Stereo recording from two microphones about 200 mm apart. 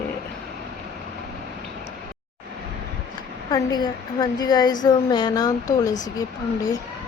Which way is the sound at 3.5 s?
20° left (ahead or behind).